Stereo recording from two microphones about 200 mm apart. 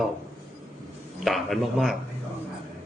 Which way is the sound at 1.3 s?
Centre (ahead or behind).